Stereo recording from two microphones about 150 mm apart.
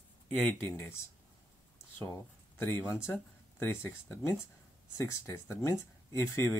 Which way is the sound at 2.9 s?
20° left (ahead or behind).